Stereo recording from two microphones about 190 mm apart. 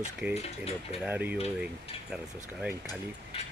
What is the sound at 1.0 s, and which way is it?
Speech, 10° right (ahead or behind).